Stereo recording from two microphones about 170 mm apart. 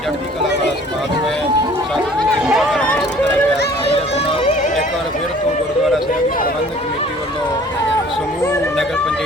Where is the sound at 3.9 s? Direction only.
35° left (ahead or behind).